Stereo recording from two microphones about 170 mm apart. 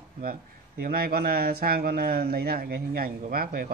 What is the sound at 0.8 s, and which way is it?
A man's voice, 60° right (ahead or behind).